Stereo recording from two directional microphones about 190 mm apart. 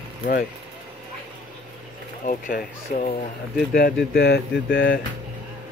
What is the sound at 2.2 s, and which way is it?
Speech, 45° left (ahead or behind).